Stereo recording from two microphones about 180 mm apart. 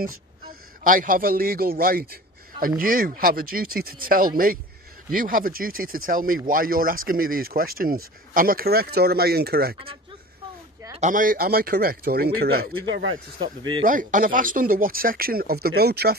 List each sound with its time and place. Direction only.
0.0 s a man's voice: 50° right (ahead or behind)
11.0 s speech: 45° right (ahead or behind)
13.4 s speech: 25° right (ahead or behind)
13.8 s speech: 45° right (ahead or behind)